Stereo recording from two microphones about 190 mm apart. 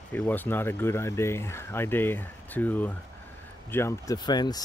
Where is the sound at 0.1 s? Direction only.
10° left (ahead or behind).